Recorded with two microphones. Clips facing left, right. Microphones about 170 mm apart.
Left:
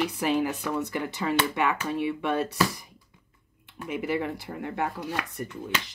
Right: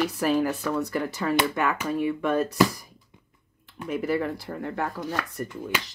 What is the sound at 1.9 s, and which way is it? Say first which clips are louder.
Speech: right 2 dB; 45° right (ahead or behind).